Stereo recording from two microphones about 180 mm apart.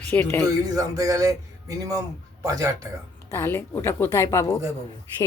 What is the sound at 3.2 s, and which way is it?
A woman's voice, 15° left (ahead or behind).